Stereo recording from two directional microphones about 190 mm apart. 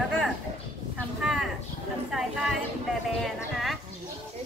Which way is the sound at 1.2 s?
Centre (ahead or behind).